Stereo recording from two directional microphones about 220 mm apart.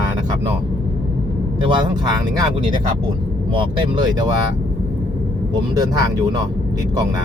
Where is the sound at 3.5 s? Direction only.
25° right (ahead or behind).